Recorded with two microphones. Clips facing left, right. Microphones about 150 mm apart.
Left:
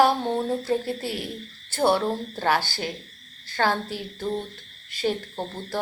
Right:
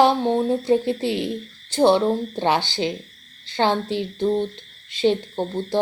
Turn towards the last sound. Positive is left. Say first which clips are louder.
# right 7 dB
turn(degrees=-20)  # may be behind; listen again after turning